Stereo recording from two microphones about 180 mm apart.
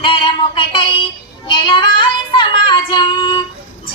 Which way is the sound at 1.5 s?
25° left (ahead or behind).